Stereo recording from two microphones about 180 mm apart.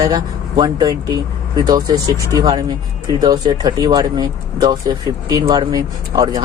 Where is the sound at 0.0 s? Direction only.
20° right (ahead or behind).